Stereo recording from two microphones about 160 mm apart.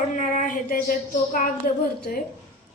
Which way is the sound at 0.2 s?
55° left (ahead or behind).